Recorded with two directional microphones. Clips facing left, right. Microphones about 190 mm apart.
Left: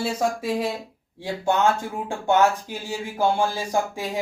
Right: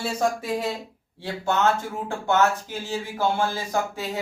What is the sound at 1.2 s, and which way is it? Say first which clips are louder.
Speech: left 2 dB; 15° left (ahead or behind).